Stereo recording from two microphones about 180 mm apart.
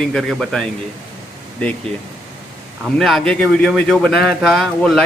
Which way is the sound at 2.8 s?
Centre (ahead or behind).